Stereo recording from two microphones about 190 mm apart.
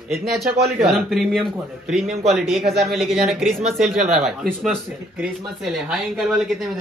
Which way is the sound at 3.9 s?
35° right (ahead or behind).